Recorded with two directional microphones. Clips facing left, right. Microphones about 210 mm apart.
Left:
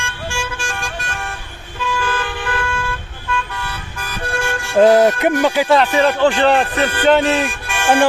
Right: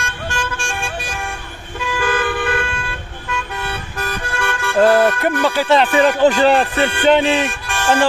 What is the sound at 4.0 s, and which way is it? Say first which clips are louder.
Toot: left 1 dB; 55° right (ahead or behind).